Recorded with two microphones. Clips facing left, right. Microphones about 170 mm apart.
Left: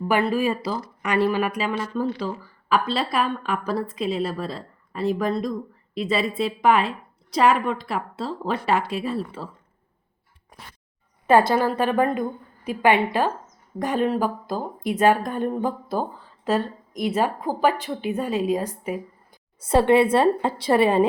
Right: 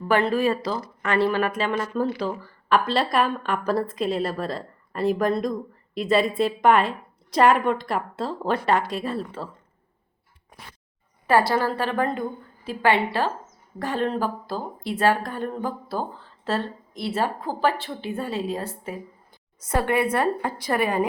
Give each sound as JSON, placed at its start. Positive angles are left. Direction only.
{"t": 0.1, "sound": "speech", "side_deg": 10}
{"t": 2.0, "sound": "a woman's voice", "side_deg": -5}
{"t": 11.3, "sound": "speech", "side_deg": 20}
{"t": 19.6, "sound": "a woman's voice", "side_deg": 25}